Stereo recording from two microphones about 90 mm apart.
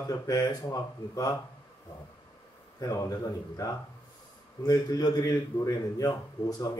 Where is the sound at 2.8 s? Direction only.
40° left (ahead or behind).